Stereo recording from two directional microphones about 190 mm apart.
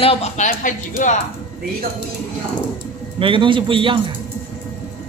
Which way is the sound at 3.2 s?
25° right (ahead or behind).